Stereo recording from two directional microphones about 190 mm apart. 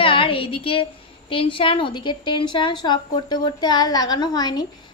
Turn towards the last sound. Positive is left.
turn(degrees=20)  # may be behind; listen again after turning